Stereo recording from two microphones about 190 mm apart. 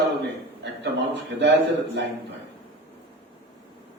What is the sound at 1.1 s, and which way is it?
Speech, 65° right (ahead or behind).